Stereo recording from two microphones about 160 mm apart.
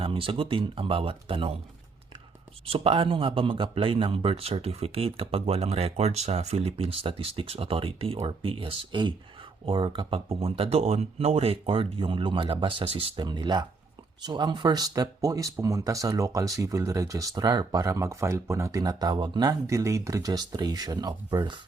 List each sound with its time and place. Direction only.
0.0 s speech: 35° right (ahead or behind)
2.6 s speech: 35° right (ahead or behind)